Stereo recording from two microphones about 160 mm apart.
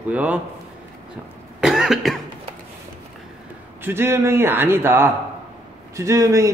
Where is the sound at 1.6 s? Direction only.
5° right (ahead or behind).